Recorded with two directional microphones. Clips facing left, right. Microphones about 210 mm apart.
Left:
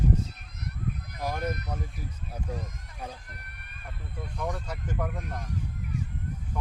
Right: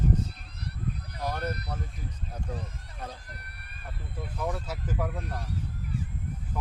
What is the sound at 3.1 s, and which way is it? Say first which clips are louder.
Run: even; 35° right (ahead or behind).